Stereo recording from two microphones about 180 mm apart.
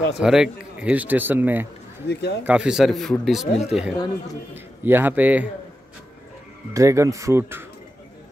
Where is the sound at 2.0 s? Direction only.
70° left (ahead or behind).